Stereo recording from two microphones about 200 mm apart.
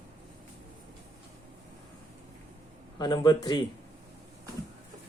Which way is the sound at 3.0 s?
20° left (ahead or behind).